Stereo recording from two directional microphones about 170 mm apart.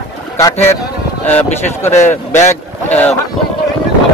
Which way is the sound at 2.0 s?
45° left (ahead or behind).